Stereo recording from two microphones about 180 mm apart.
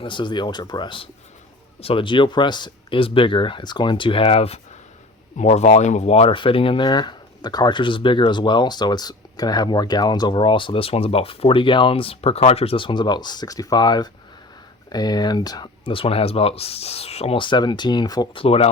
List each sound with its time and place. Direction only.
0.0 s speech: 25° left (ahead or behind)